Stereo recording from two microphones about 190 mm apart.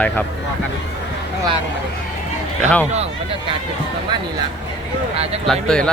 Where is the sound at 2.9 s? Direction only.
35° right (ahead or behind).